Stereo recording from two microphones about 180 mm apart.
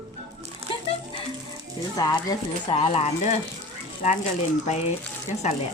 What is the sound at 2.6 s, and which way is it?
Speech, 30° left (ahead or behind).